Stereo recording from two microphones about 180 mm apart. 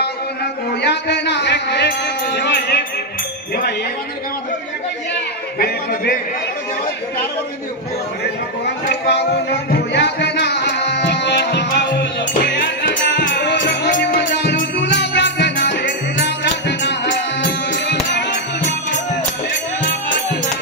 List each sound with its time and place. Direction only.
0.8 s music: 70° left (ahead or behind)
5.6 s a sound: 60° left (ahead or behind)
8.8 s music: 70° left (ahead or behind)
13.7 s music: 85° left